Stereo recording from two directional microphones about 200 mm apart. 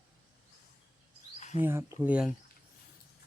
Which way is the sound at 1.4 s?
35° left (ahead or behind).